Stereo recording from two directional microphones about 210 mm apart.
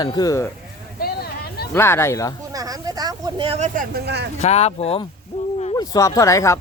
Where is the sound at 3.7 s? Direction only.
50° right (ahead or behind).